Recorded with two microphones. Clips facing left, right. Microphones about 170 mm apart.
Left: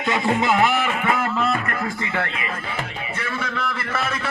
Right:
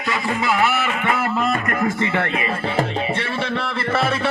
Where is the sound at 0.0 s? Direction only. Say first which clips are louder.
Left 2 dB; 25° left (ahead or behind).